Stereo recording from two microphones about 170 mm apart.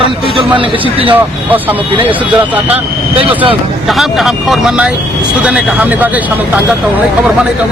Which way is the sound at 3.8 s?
Centre (ahead or behind).